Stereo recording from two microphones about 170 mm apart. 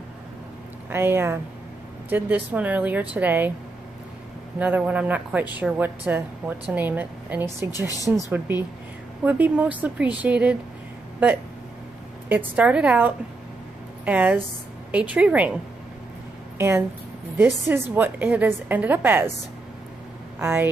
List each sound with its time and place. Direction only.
0.8 s a woman's voice: 15° right (ahead or behind)
4.6 s a woman's voice: 10° right (ahead or behind)
12.3 s a woman's voice: 10° right (ahead or behind)
20.3 s a woman's voice: 15° right (ahead or behind)